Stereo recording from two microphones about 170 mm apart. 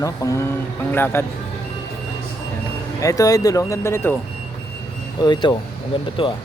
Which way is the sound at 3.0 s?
20° left (ahead or behind).